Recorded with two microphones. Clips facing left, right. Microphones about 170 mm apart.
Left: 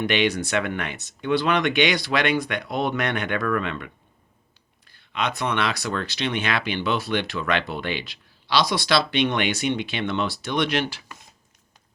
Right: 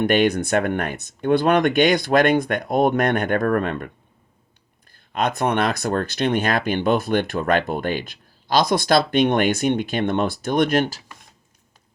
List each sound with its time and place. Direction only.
0.0 s speech: 50° right (ahead or behind)